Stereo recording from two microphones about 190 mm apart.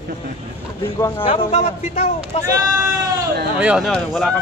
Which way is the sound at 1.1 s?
30° left (ahead or behind).